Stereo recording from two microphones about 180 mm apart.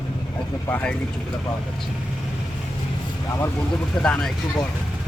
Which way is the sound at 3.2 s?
15° left (ahead or behind).